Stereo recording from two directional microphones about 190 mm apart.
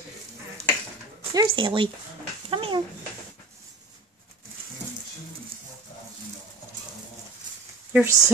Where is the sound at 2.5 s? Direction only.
30° right (ahead or behind).